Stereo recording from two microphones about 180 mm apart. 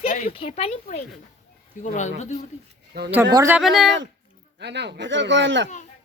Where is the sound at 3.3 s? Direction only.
20° right (ahead or behind).